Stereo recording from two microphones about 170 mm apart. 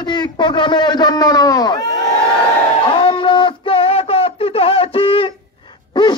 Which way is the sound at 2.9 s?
30° left (ahead or behind).